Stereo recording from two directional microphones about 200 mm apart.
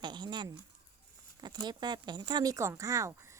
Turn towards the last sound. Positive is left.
turn(degrees=-15)  # may be behind; listen again after turning